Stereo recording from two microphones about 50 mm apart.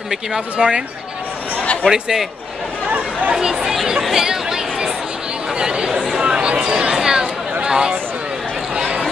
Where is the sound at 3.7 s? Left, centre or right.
Centre.